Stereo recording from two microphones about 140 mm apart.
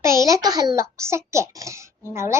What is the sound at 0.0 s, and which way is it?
A child's voice, 20° right (ahead or behind).